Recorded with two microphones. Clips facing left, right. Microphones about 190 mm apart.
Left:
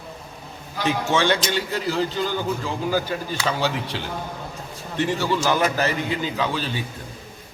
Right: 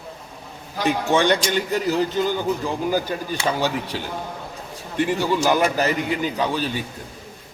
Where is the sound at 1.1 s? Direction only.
15° right (ahead or behind).